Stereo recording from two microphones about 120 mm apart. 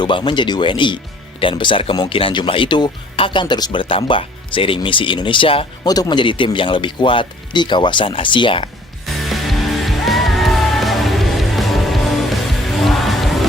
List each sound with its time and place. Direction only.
0.0 s speech: 40° left (ahead or behind)
5.8 s speech: 35° left (ahead or behind)
9.2 s music: centre (ahead or behind)